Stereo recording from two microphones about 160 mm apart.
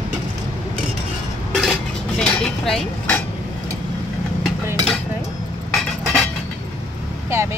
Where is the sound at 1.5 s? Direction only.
Centre (ahead or behind).